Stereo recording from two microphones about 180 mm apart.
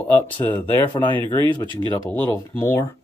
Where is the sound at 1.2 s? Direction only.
25° left (ahead or behind).